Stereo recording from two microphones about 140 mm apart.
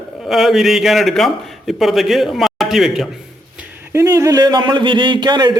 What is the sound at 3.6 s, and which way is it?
Speech, 15° right (ahead or behind).